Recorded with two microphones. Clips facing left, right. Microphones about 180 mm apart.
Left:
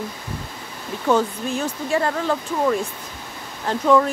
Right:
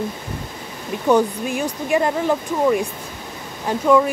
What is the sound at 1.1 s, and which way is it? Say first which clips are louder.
Speech: right 3 dB; 15° right (ahead or behind).